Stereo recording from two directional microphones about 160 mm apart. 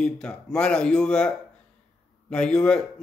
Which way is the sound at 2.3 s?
5° left (ahead or behind).